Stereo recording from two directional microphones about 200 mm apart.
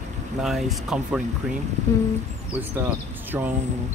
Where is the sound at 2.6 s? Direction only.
10° right (ahead or behind).